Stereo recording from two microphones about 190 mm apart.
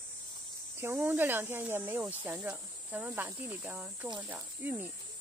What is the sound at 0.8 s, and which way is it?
Speech, 10° right (ahead or behind).